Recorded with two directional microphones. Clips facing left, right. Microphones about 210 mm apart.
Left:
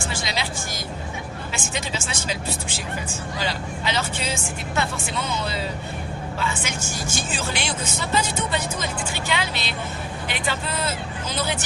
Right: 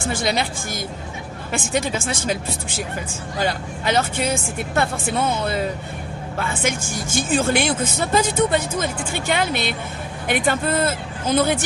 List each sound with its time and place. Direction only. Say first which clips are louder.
0.0 s a woman's voice: right 6 dB; 55° right (ahead or behind)